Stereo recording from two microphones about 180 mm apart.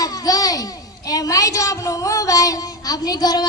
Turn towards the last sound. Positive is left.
turn(degrees=20)  # may be behind; listen again after turning